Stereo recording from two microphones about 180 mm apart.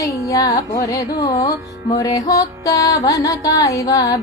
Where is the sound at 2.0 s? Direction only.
20° left (ahead or behind).